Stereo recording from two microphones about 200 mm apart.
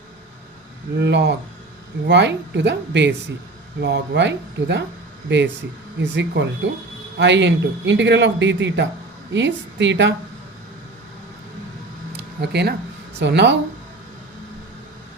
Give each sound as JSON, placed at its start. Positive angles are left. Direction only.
{"t": 0.9, "sound": "speech", "side_deg": -60}
{"t": 12.1, "sound": "a sound", "side_deg": -55}
{"t": 13.1, "sound": "speech", "side_deg": -60}